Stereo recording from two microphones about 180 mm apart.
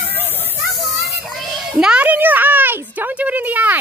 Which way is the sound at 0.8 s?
Centre (ahead or behind).